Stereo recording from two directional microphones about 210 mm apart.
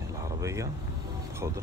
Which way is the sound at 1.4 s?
15° right (ahead or behind).